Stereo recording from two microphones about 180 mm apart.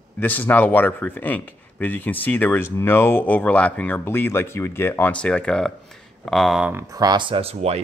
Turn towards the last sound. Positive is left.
turn(degrees=-35)  # may be behind; listen again after turning